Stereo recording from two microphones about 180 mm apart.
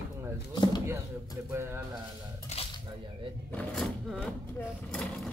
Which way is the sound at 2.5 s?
35° left (ahead or behind).